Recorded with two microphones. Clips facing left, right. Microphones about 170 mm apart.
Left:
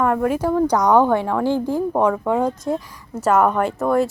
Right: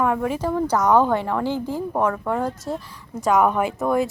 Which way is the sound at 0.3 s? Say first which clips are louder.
Left 4 dB; 10° left (ahead or behind).